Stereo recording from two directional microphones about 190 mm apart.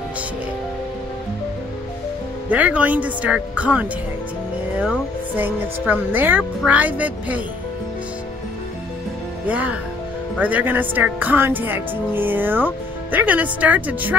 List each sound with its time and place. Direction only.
2.5 s speech: 10° right (ahead or behind)
9.5 s speech: 5° right (ahead or behind)